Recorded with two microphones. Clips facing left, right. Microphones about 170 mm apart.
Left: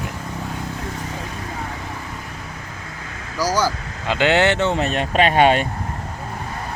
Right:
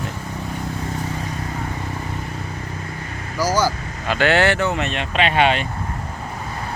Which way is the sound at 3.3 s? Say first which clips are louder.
Right 1 dB; 15° left (ahead or behind).